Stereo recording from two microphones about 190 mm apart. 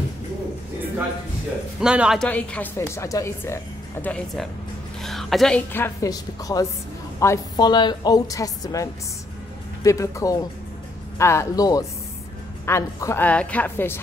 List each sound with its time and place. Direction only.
1.8 s a man's voice: 5° right (ahead or behind)
2.2 s a woman's voice: 5° left (ahead or behind)
9.8 s speech: 15° left (ahead or behind)